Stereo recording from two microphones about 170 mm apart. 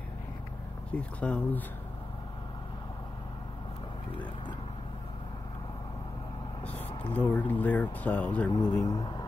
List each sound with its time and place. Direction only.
0.9 s speech: 5° left (ahead or behind)
7.1 s speech: 10° left (ahead or behind)
8.5 s speech: 25° left (ahead or behind)